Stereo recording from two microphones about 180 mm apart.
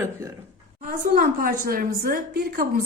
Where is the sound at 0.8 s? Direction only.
55° right (ahead or behind).